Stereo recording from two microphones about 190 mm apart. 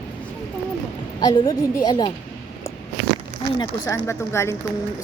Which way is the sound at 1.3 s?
15° left (ahead or behind).